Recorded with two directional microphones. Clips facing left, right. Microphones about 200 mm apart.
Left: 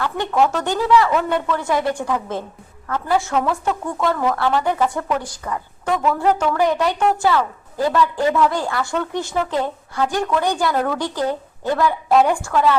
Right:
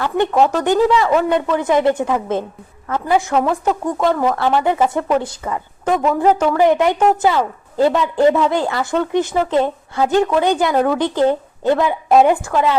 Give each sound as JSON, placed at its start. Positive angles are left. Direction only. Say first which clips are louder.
{"t": 0.0, "sound": "a woman's voice", "louder": "right 4 dB", "side_deg": -20}